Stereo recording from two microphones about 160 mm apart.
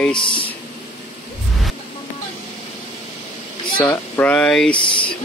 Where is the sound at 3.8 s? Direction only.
10° left (ahead or behind).